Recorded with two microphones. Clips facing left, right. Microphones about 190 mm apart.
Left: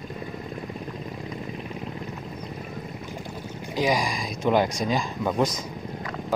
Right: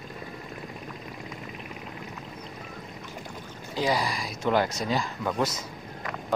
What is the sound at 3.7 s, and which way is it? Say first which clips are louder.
Speech: left 2 dB; 15° left (ahead or behind).